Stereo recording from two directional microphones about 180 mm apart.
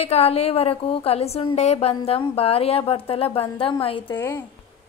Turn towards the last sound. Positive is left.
turn(degrees=10)  # may be behind; listen again after turning